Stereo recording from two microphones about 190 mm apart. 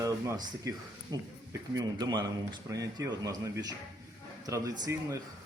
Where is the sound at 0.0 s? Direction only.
15° right (ahead or behind).